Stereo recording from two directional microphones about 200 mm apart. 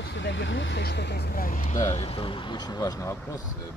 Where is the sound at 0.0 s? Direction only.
60° left (ahead or behind); by 1.8 s 40° left (ahead or behind).